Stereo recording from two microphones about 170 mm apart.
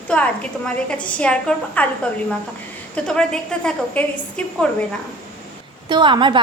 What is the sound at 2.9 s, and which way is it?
A woman's voice, 5° left (ahead or behind).